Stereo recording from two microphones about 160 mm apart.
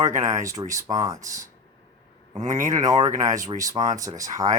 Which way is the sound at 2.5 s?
25° right (ahead or behind).